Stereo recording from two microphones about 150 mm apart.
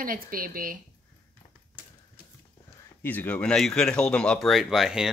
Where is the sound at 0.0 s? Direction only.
70° right (ahead or behind).